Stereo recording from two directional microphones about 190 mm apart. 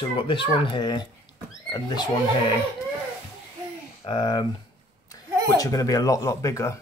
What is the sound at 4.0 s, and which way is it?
Speech, 25° left (ahead or behind).